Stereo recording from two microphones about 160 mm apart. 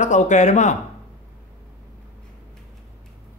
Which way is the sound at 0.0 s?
50° left (ahead or behind).